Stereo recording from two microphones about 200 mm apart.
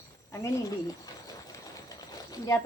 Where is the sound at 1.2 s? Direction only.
15° left (ahead or behind).